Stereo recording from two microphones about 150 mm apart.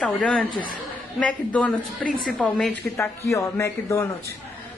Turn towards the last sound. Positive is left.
turn(degrees=20)  # may be behind; listen again after turning